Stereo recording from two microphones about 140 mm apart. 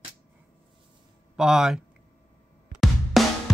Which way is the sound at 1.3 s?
5° right (ahead or behind).